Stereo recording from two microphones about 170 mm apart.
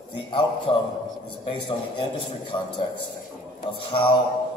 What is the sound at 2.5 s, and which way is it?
A man's voice, 30° left (ahead or behind).